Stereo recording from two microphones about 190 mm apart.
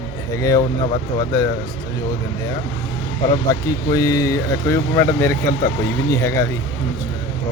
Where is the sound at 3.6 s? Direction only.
20° left (ahead or behind).